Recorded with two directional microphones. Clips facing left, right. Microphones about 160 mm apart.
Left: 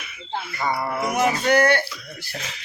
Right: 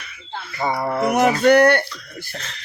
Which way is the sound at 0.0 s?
10° left (ahead or behind).